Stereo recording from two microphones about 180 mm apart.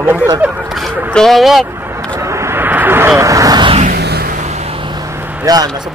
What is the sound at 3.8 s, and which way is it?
Music, 60° right (ahead or behind).